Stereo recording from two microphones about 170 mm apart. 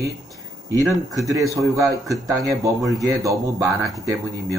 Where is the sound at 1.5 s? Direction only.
20° right (ahead or behind).